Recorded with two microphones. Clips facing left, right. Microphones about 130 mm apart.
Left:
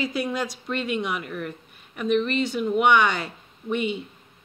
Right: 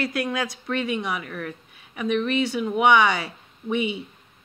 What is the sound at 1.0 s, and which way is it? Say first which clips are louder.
A woman's voice: left 1 dB; centre (ahead or behind).